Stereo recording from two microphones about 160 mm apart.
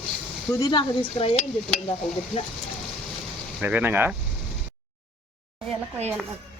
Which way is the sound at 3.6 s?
10° right (ahead or behind).